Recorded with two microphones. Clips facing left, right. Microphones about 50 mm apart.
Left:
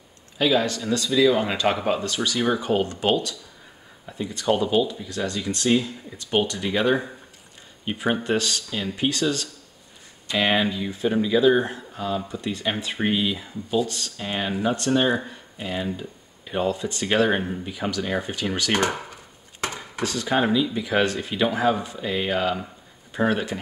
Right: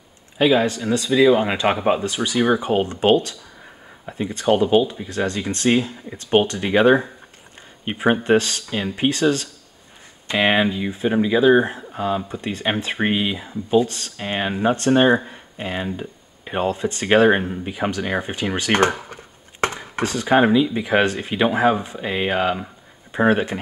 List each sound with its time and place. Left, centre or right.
0.4 s speech: right